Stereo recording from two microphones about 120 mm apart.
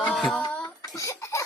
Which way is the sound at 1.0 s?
25° left (ahead or behind).